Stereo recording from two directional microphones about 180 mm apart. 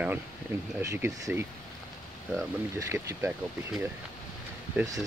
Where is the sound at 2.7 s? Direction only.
15° right (ahead or behind).